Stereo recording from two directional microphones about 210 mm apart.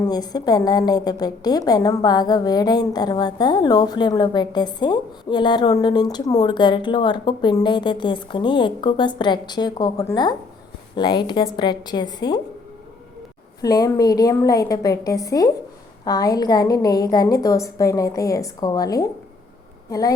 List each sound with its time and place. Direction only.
0.1 s a woman's voice: 20° left (ahead or behind)
13.6 s a woman's voice: 15° left (ahead or behind)